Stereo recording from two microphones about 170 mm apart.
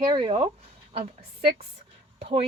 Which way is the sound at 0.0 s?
30° right (ahead or behind).